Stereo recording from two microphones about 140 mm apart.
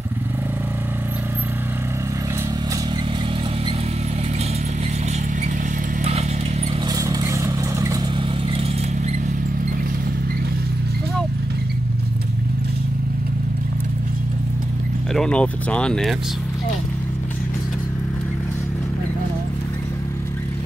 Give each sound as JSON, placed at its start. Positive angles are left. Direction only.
{"t": 7.0, "sound": "vehicle", "side_deg": -25}
{"t": 15.1, "sound": "speech", "side_deg": 5}